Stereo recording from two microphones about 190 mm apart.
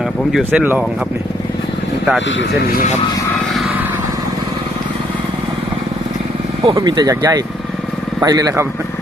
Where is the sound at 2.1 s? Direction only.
75° left (ahead or behind).